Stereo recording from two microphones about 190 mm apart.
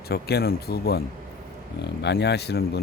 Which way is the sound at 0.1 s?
55° left (ahead or behind).